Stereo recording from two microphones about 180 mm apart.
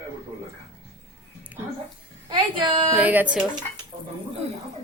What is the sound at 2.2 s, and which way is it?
Speech, 25° right (ahead or behind).